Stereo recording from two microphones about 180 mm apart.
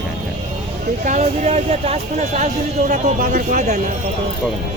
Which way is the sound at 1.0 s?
40° right (ahead or behind).